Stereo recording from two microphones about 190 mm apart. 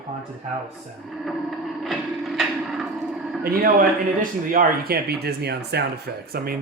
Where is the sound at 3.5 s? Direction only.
50° right (ahead or behind).